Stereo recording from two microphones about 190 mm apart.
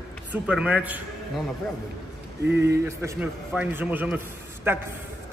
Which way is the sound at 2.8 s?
15° right (ahead or behind).